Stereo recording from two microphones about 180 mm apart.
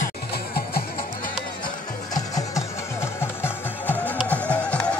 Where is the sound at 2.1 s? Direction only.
20° left (ahead or behind).